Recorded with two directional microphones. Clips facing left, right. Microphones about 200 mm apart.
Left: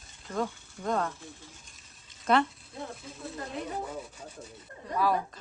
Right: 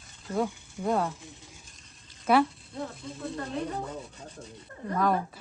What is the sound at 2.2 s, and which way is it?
A woman's voice, 5° right (ahead or behind).